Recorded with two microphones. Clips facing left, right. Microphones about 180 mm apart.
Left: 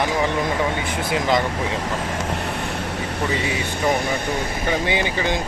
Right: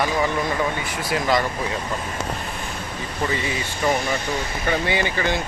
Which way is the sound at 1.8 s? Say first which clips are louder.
Left 3 dB; 90° left.